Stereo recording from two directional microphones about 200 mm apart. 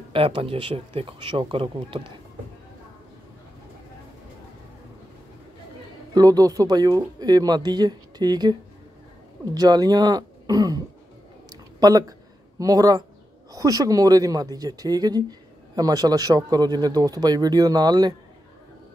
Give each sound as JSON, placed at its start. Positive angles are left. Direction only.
{"t": 0.1, "sound": "speech", "side_deg": -25}
{"t": 6.1, "sound": "speech", "side_deg": -20}
{"t": 11.8, "sound": "a sound", "side_deg": -15}
{"t": 13.5, "sound": "speech", "side_deg": -20}